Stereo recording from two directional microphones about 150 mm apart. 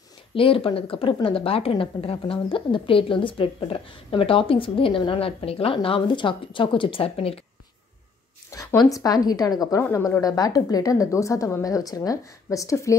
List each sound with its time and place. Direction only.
0.3 s a woman's voice: 35° left (ahead or behind)
8.5 s a woman's voice: 20° left (ahead or behind)